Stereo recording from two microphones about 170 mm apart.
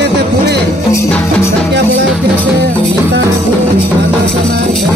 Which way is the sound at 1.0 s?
15° left (ahead or behind).